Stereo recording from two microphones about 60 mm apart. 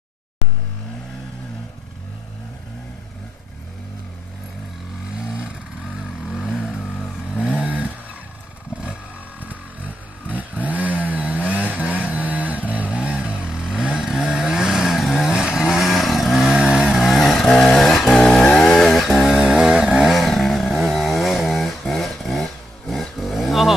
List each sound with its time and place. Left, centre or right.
5.8 s vehicle: centre
7.4 s vehicle: right
9.5 s chainsaw: right; by 15.4 s centre
15.8 s vehicle: centre
16.5 s vehicle: centre
18.8 s chainsaw: centre
20.1 s chainsaw: centre